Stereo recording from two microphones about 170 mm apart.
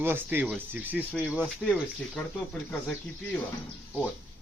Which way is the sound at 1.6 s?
5° left (ahead or behind).